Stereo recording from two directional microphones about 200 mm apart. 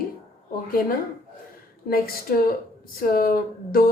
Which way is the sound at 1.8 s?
50° left (ahead or behind).